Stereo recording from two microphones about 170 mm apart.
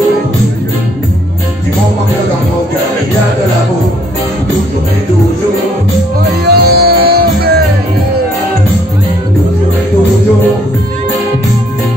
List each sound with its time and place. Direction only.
6.4 s music: 65° right (ahead or behind)